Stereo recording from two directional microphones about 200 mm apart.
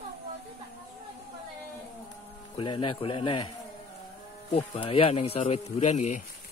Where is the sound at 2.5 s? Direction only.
25° left (ahead or behind).